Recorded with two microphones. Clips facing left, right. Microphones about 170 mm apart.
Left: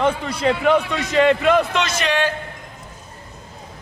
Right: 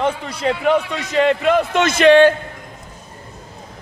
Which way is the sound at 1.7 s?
50° right (ahead or behind).